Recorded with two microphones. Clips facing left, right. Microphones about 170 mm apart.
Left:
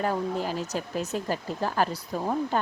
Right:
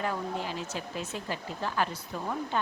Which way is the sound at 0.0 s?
40° left (ahead or behind).